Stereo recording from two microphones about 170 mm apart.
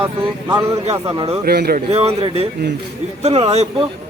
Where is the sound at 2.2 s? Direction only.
35° right (ahead or behind).